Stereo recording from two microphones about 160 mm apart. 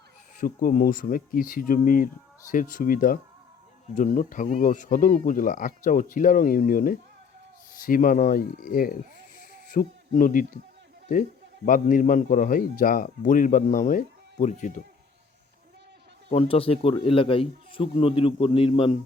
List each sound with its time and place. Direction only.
0.3 s speech: 60° left (ahead or behind)
9.4 s owl: 55° left (ahead or behind)
11.1 s speech: 55° left (ahead or behind)
16.3 s a man's voice: 35° left (ahead or behind)